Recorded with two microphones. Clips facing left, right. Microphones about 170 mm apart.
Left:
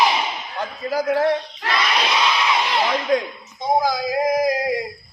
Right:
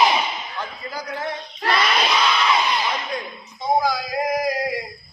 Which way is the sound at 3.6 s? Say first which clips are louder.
Left 1 dB; 20° left (ahead or behind).